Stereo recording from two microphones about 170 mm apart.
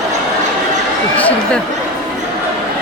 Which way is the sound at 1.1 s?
10° left (ahead or behind).